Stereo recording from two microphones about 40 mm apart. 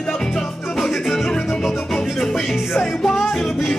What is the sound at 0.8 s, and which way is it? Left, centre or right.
Music, centre.